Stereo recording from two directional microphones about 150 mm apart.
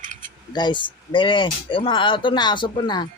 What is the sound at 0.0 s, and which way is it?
Mechanisms, 60° right (ahead or behind).